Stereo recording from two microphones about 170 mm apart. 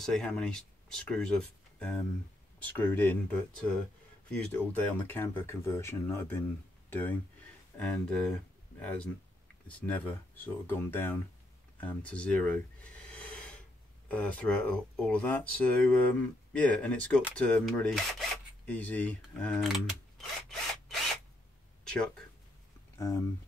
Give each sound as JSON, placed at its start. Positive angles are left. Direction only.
{"t": 0.0, "sound": "speech", "side_deg": 5}
{"t": 11.8, "sound": "a sound", "side_deg": 5}
{"t": 14.0, "sound": "speech", "side_deg": 10}
{"t": 21.8, "sound": "speech", "side_deg": 5}
{"t": 22.9, "sound": "speech", "side_deg": 20}